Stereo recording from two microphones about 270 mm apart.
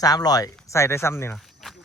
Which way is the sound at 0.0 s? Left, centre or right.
Centre.